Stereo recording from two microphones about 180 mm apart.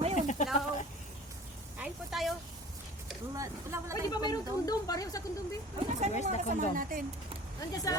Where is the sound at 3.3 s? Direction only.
15° right (ahead or behind).